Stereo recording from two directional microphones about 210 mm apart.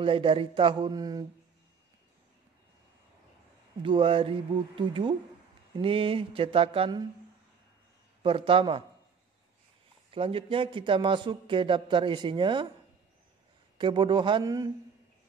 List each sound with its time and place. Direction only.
0.0 s speech: 25° right (ahead or behind)
3.8 s speech: 25° right (ahead or behind)
8.2 s speech: 25° right (ahead or behind)
10.1 s speech: 25° right (ahead or behind)
13.7 s speech: 25° right (ahead or behind)